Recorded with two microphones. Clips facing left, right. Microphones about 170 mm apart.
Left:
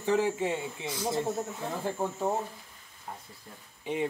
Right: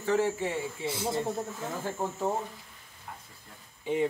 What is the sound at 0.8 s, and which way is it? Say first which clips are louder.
Speech: right 2 dB; 25° right (ahead or behind).